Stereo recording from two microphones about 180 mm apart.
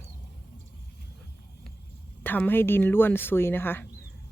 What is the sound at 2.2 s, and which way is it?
Speech, 10° left (ahead or behind).